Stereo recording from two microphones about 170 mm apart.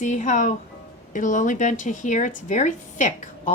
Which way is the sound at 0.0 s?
45° left (ahead or behind).